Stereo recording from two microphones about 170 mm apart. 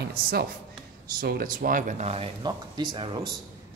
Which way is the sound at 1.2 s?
60° right (ahead or behind).